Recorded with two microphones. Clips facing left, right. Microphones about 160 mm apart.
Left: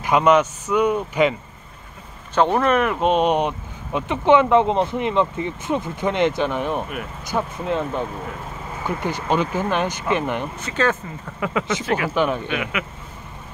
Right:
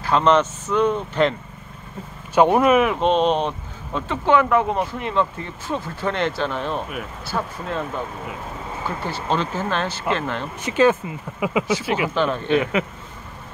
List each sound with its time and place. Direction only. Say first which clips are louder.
0.0 s speech: left 1 dB; 10° left (ahead or behind)
2.3 s speech: right 3 dB; 10° right (ahead or behind)
3.0 s speech: even; 10° left (ahead or behind)
8.8 s speech: left 3 dB; 15° left (ahead or behind)
10.6 s speech: right 7 dB; 15° right (ahead or behind)
12.1 s speech: even; 15° left (ahead or behind)